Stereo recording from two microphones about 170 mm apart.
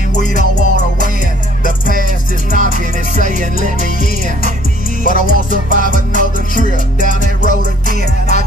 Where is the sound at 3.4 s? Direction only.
55° left (ahead or behind).